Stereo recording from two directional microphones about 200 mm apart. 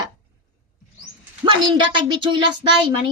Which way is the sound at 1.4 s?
25° right (ahead or behind).